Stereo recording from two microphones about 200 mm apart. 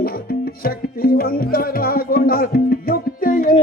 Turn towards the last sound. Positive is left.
turn(degrees=45)  # may be behind; listen again after turning